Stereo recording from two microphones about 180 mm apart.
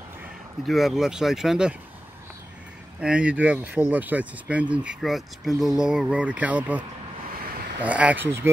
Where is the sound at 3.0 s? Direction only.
5° right (ahead or behind).